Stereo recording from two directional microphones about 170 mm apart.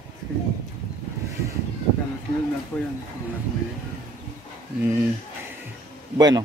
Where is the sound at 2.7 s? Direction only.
5° left (ahead or behind).